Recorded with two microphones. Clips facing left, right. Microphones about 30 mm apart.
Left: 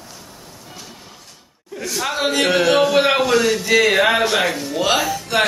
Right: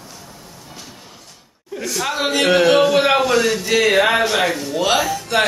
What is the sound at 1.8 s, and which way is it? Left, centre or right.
A man's voice, centre.